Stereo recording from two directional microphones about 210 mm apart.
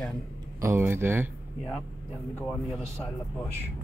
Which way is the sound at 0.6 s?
10° right (ahead or behind).